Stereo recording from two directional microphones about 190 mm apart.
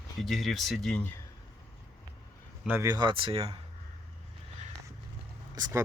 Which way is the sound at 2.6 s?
15° right (ahead or behind).